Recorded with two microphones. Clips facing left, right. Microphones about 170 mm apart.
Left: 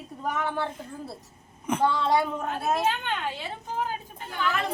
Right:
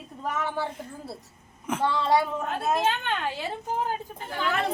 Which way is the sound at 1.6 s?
Centre (ahead or behind).